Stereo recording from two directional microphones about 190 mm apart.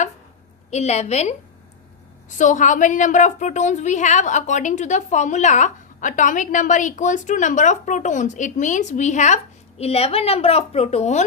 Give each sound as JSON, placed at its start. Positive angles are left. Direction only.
{"t": 0.7, "sound": "a woman's voice", "side_deg": 35}
{"t": 2.4, "sound": "a woman's voice", "side_deg": 40}